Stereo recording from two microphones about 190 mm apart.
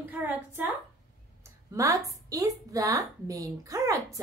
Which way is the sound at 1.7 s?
15° right (ahead or behind).